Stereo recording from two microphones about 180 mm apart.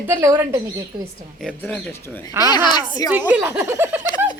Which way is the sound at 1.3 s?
5° left (ahead or behind).